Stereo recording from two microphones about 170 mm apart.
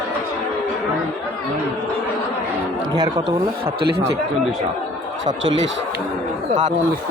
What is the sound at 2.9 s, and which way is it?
Speech, 25° right (ahead or behind).